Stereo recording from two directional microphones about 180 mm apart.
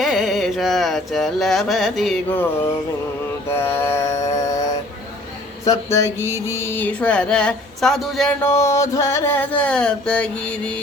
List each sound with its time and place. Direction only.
0.0 s carnatic music: centre (ahead or behind)
3.5 s mantra: 15° left (ahead or behind)
5.6 s speech: 20° left (ahead or behind)
6.2 s mantra: 15° right (ahead or behind)
6.6 s speech: 10° left (ahead or behind)